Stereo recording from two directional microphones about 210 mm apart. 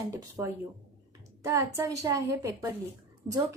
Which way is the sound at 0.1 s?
15° right (ahead or behind).